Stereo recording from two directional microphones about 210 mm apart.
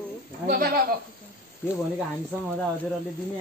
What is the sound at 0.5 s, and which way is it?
Speech, 45° right (ahead or behind).